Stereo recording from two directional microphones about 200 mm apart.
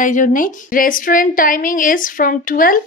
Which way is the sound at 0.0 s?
40° left (ahead or behind).